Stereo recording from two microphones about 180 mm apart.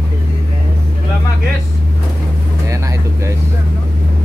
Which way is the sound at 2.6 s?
15° right (ahead or behind).